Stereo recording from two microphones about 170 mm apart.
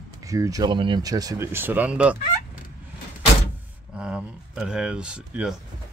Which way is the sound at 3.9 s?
5° right (ahead or behind).